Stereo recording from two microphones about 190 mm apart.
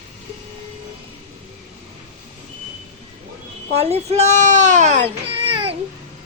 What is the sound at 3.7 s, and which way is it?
A child's voice, 35° right (ahead or behind).